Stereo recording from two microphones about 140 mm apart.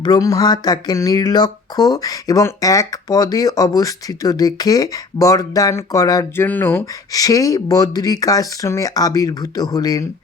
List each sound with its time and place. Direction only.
0.0 s speech: 25° left (ahead or behind)
7.1 s speech: 25° left (ahead or behind)